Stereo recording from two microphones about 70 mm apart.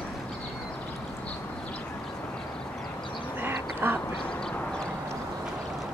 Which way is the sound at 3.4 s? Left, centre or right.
Right.